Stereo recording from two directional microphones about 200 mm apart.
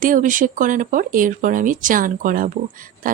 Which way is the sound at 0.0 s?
40° right (ahead or behind).